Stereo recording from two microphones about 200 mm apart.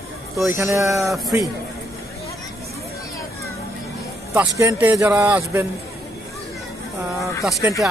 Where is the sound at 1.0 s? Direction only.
Centre (ahead or behind).